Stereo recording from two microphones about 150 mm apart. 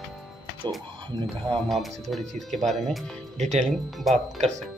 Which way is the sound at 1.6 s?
Centre (ahead or behind).